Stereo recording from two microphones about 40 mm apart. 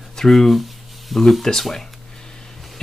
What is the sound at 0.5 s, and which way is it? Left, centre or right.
Speech, centre.